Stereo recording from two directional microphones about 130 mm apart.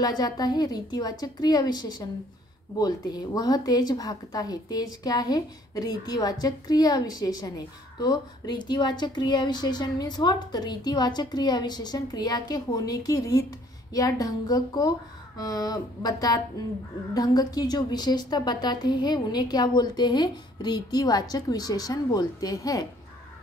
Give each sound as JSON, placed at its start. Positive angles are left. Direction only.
{"t": 0.0, "sound": "speech", "side_deg": 30}